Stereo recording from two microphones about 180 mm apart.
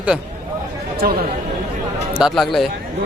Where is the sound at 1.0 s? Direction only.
55° right (ahead or behind).